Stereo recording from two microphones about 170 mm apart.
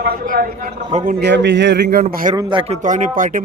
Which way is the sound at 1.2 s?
90° right.